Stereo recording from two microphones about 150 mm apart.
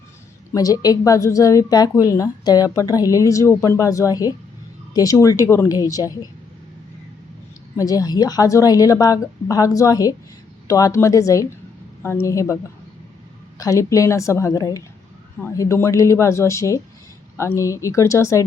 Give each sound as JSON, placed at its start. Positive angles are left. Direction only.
{"t": 0.5, "sound": "a woman's voice", "side_deg": 25}
{"t": 7.8, "sound": "a woman's voice", "side_deg": 25}
{"t": 13.6, "sound": "a woman's voice", "side_deg": 20}